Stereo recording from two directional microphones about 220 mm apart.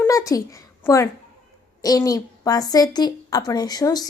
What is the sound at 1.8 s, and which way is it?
A woman's voice, 15° left (ahead or behind).